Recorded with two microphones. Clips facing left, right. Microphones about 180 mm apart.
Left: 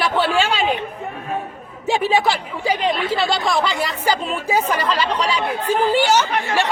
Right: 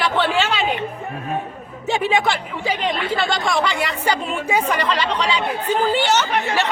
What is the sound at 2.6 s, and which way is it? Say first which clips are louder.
Speech: left 3 dB; 35° left (ahead or behind).